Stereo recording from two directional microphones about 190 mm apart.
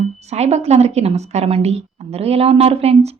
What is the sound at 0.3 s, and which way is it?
A woman's voice, 35° right (ahead or behind).